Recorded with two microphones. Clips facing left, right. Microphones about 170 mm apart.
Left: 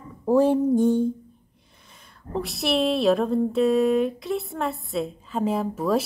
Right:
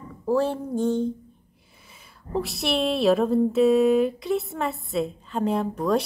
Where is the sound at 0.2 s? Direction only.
15° left (ahead or behind).